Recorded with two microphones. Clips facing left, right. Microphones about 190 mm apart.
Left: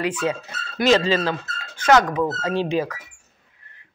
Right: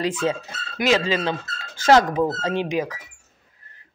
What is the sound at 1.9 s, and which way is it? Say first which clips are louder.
Snicker: right 1 dB; 30° right (ahead or behind).